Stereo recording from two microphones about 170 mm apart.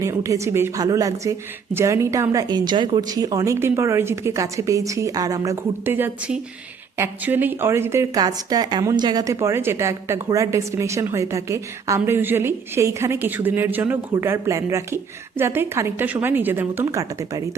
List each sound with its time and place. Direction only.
0.0 s a woman's voice: 20° right (ahead or behind)